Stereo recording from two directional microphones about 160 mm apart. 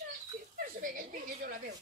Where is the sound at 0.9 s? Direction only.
60° right (ahead or behind).